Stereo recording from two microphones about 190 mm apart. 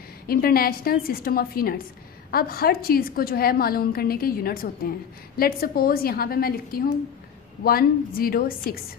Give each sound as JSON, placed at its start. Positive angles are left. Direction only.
{"t": 0.3, "sound": "a woman's voice", "side_deg": 50}